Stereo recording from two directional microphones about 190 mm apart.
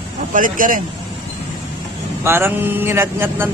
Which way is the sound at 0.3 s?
45° right (ahead or behind).